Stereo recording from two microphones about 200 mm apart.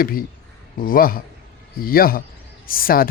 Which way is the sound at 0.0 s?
45° left (ahead or behind).